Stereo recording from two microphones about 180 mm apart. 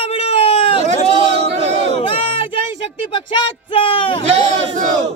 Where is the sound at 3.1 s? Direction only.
30° left (ahead or behind).